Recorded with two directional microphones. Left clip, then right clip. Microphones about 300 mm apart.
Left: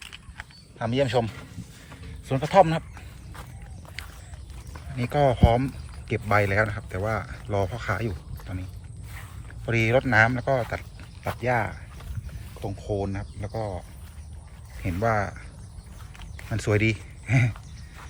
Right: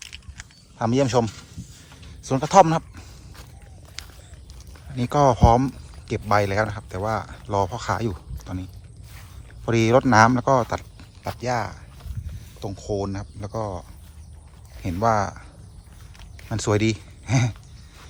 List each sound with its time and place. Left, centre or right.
0.8 s speech: right
2.2 s speech: centre
4.9 s speech: centre
9.6 s speech: centre
10.7 s pig: centre
11.3 s speech: centre
15.0 s speech: centre
16.1 s a sound: centre
16.6 s speech: centre